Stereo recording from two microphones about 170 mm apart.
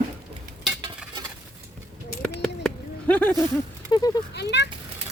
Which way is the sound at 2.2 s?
5° left (ahead or behind).